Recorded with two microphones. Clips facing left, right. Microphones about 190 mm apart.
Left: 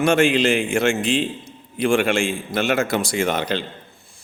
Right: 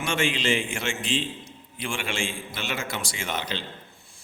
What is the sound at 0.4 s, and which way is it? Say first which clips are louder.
Speech: left 7 dB; 65° left (ahead or behind).